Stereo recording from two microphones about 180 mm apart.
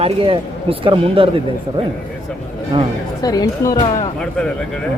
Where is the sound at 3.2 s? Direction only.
20° left (ahead or behind).